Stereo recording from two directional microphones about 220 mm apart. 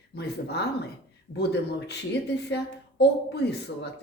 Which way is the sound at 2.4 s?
50° left (ahead or behind).